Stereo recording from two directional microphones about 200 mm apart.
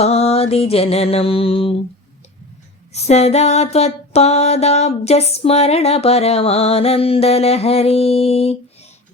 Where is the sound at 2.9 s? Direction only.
35° left (ahead or behind).